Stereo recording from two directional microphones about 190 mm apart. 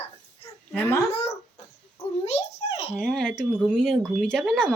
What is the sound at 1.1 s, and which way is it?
Speech, 35° left (ahead or behind).